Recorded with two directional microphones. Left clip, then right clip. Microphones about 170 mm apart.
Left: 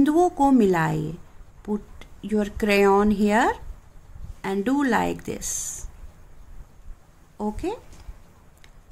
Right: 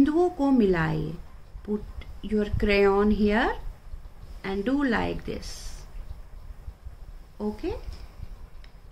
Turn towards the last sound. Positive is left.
turn(degrees=50)  # may be behind; listen again after turning